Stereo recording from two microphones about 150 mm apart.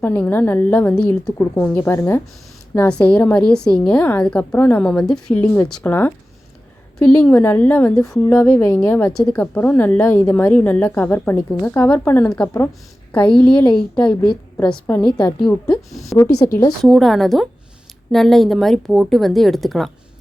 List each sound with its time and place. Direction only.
0.0 s a woman's voice: 15° left (ahead or behind)
16.2 s speech: 20° left (ahead or behind)
16.8 s a woman's voice: centre (ahead or behind)